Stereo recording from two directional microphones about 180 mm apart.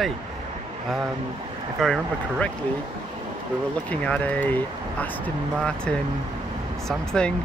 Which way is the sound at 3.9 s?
5° left (ahead or behind).